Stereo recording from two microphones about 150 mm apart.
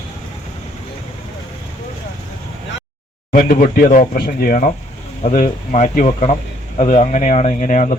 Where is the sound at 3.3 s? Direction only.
75° left (ahead or behind).